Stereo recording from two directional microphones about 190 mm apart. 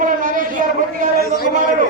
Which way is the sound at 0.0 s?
45° right (ahead or behind).